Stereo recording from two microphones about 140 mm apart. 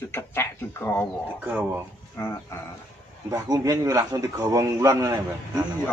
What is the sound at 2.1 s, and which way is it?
Speech, 15° left (ahead or behind).